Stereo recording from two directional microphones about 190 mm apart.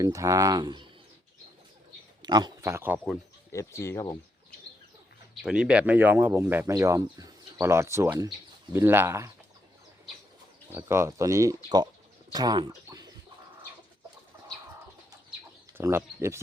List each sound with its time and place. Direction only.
0.0 s speech: 15° right (ahead or behind)
2.2 s speech: 20° right (ahead or behind)
3.5 s speech: 15° left (ahead or behind)
5.3 s speech: 5° right (ahead or behind)
10.7 s speech: 15° right (ahead or behind)
15.8 s speech: 15° right (ahead or behind)